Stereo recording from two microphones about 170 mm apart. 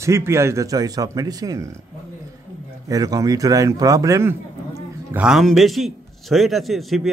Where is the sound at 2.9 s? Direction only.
20° right (ahead or behind).